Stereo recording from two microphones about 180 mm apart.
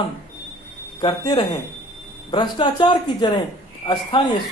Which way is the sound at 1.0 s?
30° left (ahead or behind).